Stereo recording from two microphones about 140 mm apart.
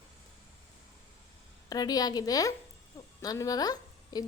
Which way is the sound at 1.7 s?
25° left (ahead or behind).